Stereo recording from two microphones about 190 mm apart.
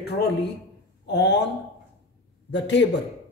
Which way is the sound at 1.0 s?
65° left (ahead or behind).